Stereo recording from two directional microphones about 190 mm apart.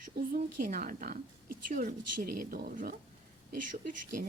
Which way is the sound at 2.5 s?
55° right (ahead or behind).